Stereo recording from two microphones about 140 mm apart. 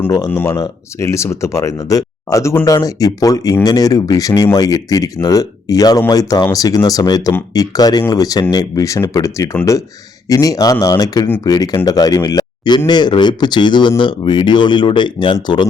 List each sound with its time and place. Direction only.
0.3 s speech: 15° left (ahead or behind); by 15.6 s 35° left (ahead or behind)